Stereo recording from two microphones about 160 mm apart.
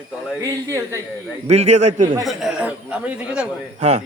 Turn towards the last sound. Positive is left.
turn(degrees=-45)  # may be behind; listen again after turning